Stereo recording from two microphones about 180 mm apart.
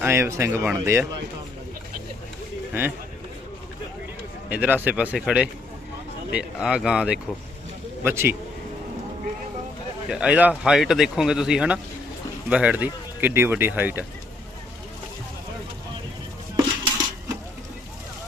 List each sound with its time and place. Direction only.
0.0 s speech: 15° right (ahead or behind)
4.4 s speech: 10° right (ahead or behind)
10.1 s speech: 5° right (ahead or behind)
16.6 s dishes: 15° right (ahead or behind)